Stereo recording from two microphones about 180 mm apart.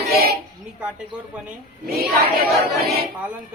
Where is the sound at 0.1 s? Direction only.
60° right (ahead or behind).